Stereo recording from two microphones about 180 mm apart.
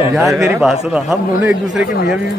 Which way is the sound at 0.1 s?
Centre (ahead or behind).